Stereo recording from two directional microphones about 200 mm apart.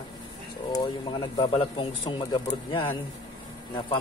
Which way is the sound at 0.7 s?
20° left (ahead or behind).